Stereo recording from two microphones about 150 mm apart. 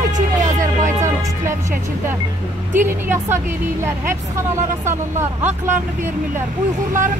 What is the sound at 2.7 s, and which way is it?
A woman's voice, 15° right (ahead or behind).